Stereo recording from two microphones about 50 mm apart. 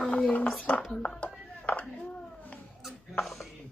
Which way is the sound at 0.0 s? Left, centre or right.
Left.